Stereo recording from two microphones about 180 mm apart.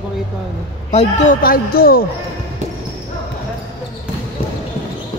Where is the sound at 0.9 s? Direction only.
40° left (ahead or behind); by 2.1 s 55° left (ahead or behind).